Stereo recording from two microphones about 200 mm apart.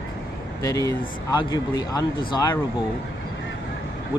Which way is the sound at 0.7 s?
20° left (ahead or behind).